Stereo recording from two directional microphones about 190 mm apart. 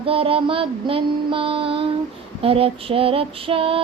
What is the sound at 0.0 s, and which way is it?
Female singing, 30° right (ahead or behind).